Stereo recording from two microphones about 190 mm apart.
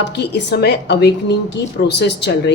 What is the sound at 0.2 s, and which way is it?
A woman's voice, 60° left (ahead or behind).